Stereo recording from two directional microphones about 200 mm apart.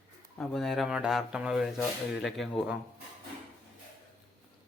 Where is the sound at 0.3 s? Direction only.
Centre (ahead or behind).